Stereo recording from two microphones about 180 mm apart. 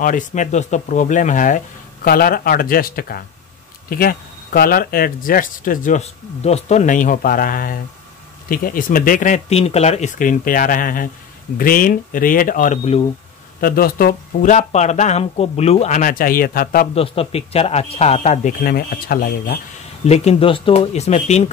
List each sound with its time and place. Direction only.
0.0 s speech: 45° left (ahead or behind)
13.6 s speech: 55° left (ahead or behind)
16.9 s speech: 30° left (ahead or behind)
18.6 s speech: 55° left (ahead or behind)
20.1 s speech: 35° left (ahead or behind)